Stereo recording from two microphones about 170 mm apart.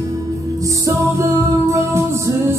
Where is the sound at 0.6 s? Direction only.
20° right (ahead or behind).